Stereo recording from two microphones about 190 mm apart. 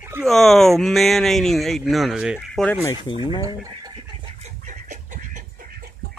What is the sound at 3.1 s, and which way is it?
Speech, 25° left (ahead or behind).